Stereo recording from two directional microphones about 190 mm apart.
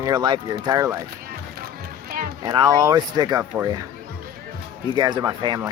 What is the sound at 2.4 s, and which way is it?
Speech, 20° right (ahead or behind).